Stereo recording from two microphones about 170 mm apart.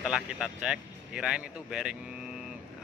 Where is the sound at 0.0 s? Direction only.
5° right (ahead or behind).